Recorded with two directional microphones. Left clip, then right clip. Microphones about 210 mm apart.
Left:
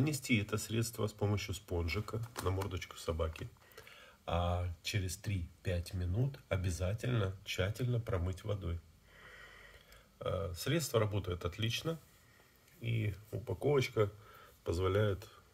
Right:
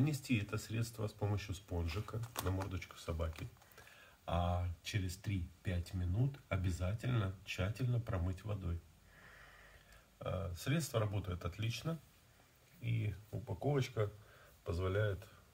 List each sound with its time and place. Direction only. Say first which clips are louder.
0.0 s speech: left 4 dB; 40° left (ahead or behind)
10.1 s speech: left 5 dB; 35° left (ahead or behind)